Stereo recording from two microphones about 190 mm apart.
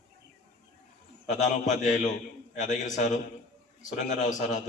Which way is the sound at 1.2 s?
40° left (ahead or behind).